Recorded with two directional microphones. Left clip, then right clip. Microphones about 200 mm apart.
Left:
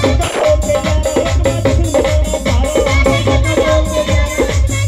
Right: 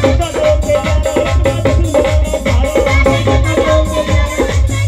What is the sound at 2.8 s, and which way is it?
Music, 5° right (ahead or behind).